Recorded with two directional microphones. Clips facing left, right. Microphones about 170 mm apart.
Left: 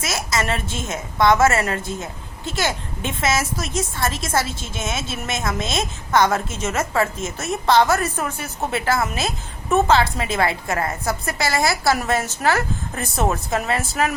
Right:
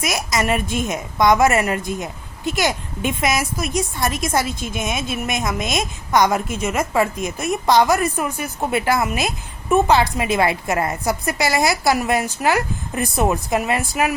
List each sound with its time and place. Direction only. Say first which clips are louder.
0.0 s a woman's voice: right 2 dB; 15° right (ahead or behind)